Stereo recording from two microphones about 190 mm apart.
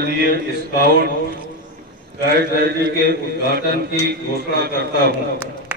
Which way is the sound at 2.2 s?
55° right (ahead or behind).